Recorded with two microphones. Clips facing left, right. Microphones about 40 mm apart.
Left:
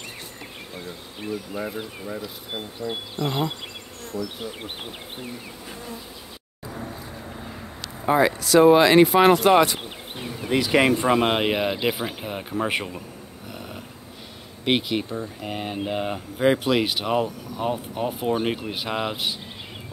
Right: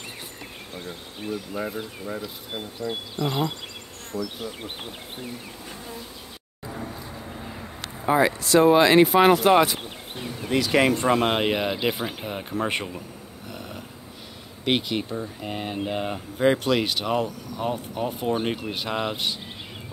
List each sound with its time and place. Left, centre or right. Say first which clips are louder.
1.5 s speech: even; centre
2.5 s speech: even; centre
4.2 s speech: even; centre
8.0 s speech: left 1 dB; centre
9.8 s insect: left 1 dB; centre
10.5 s speech: left 1 dB; left; by 13.0 s centre
13.5 s a sound: even; centre
14.6 s speech: left 1 dB; centre